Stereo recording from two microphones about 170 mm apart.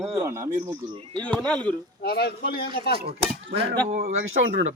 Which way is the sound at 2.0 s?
70° left (ahead or behind).